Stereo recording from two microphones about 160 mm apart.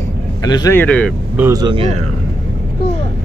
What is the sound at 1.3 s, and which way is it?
Speech, 15° right (ahead or behind).